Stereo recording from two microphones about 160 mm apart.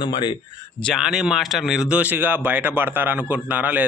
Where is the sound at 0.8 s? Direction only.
Centre (ahead or behind).